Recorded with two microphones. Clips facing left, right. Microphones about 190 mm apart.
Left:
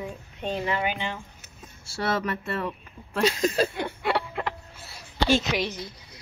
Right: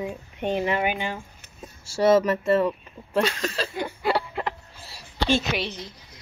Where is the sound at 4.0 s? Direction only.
Centre (ahead or behind).